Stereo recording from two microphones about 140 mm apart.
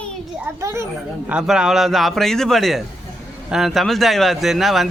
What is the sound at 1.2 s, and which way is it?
Speech, 5° right (ahead or behind).